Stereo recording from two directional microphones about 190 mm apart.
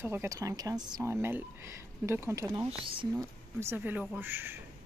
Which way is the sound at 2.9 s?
25° right (ahead or behind).